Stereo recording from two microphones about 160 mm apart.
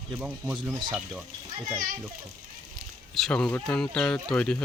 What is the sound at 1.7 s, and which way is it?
Speech, 60° right (ahead or behind).